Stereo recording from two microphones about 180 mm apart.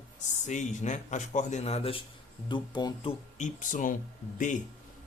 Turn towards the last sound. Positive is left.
turn(degrees=45)  # may be behind; listen again after turning